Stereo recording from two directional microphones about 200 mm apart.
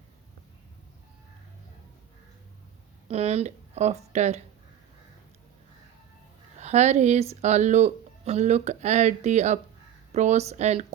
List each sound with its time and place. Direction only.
3.1 s speech: 30° right (ahead or behind)
6.6 s speech: 35° right (ahead or behind)